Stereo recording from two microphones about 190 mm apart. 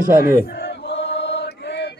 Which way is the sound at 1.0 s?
65° left (ahead or behind).